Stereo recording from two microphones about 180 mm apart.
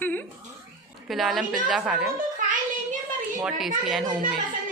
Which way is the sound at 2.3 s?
45° right (ahead or behind).